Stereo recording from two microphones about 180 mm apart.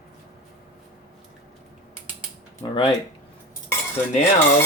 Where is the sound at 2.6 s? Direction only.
25° left (ahead or behind).